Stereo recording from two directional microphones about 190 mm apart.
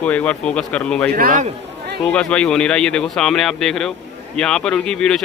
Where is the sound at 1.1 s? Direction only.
45° right (ahead or behind).